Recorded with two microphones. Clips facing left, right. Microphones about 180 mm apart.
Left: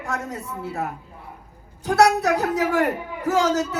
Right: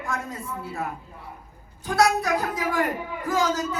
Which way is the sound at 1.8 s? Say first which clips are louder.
Left 4 dB; 70° left (ahead or behind).